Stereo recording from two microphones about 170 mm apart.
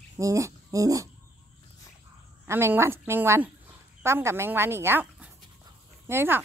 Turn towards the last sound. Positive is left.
turn(degrees=-15)  # may be behind; listen again after turning